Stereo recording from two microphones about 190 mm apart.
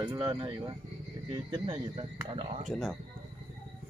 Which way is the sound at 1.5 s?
25° right (ahead or behind).